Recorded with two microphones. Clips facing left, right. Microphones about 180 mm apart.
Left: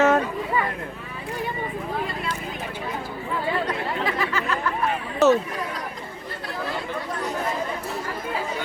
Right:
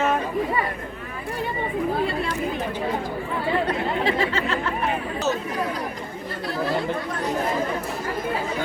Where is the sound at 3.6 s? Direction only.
25° right (ahead or behind).